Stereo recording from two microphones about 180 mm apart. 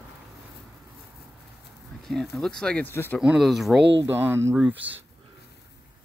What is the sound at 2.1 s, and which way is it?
Speech, centre (ahead or behind).